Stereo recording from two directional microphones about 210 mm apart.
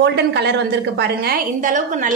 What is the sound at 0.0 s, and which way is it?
A woman's voice, 55° right (ahead or behind).